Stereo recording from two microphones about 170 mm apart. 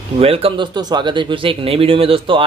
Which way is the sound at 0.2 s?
35° right (ahead or behind).